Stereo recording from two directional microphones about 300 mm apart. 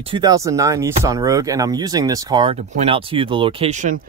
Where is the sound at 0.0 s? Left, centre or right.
Centre.